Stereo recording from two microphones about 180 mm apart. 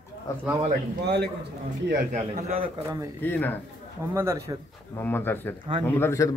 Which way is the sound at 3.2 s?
10° left (ahead or behind).